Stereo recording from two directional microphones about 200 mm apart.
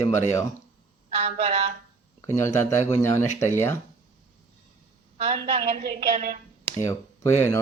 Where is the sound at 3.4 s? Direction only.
15° left (ahead or behind).